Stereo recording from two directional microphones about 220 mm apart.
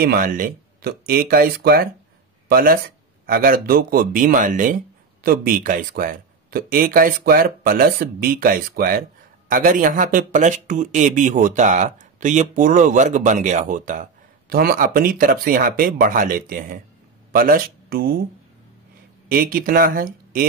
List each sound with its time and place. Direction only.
0.0 s speech: 40° right (ahead or behind)
19.2 s speech: 40° right (ahead or behind)